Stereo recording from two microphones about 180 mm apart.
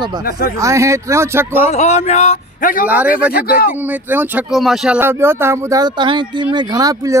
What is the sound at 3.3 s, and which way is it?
Speech, 55° left (ahead or behind).